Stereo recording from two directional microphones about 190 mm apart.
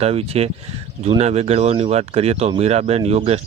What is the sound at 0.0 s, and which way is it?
Speech, 30° right (ahead or behind).